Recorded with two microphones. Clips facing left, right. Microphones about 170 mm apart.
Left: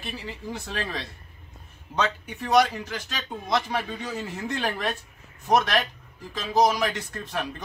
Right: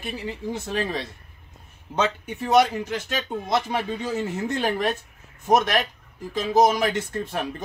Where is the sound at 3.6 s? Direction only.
20° right (ahead or behind).